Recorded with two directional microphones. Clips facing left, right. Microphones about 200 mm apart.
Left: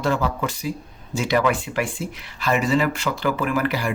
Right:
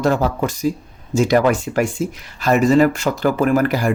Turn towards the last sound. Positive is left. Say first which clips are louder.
# right 6 dB
turn(degrees=-45)  # may be behind; listen again after turning